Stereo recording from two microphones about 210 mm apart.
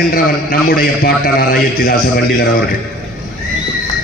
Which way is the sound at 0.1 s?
45° left (ahead or behind).